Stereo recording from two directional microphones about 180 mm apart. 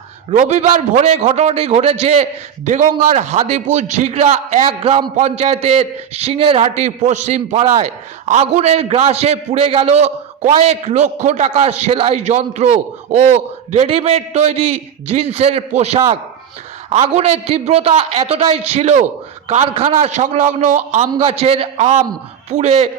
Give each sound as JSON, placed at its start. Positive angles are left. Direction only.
{"t": 0.3, "sound": "a man's voice", "side_deg": -35}
{"t": 17.2, "sound": "a man's voice", "side_deg": -35}
{"t": 21.1, "sound": "a man's voice", "side_deg": -35}